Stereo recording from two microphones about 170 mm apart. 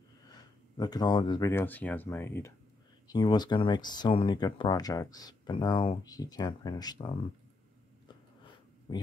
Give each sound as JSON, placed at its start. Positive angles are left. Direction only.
{"t": 0.3, "sound": "a sound", "side_deg": 20}
{"t": 1.5, "sound": "speech", "side_deg": 10}
{"t": 3.1, "sound": "speech", "side_deg": 25}
{"t": 8.9, "sound": "speech", "side_deg": 30}